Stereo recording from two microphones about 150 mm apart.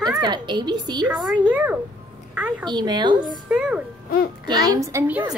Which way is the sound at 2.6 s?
30° right (ahead or behind).